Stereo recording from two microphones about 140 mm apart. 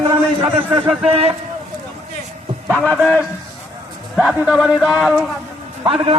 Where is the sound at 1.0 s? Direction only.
45° right (ahead or behind).